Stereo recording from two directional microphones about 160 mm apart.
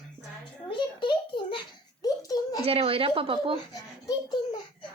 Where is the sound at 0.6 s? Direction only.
30° left (ahead or behind).